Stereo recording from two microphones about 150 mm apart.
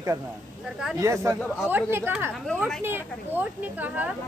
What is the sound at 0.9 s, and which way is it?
Speech, 20° right (ahead or behind).